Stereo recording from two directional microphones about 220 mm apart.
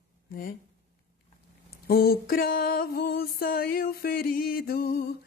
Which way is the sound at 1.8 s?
45° left (ahead or behind).